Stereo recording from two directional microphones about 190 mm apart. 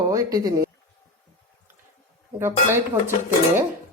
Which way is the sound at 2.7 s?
10° right (ahead or behind).